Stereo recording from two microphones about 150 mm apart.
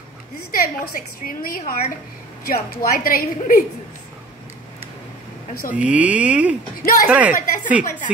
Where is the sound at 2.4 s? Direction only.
90° left; by 3.6 s 70° left (ahead or behind).